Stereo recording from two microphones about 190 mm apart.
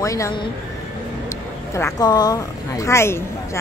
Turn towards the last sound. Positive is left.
turn(degrees=15)  # may be behind; listen again after turning